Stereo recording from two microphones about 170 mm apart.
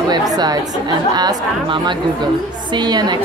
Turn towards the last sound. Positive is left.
turn(degrees=-25)  # may be behind; listen again after turning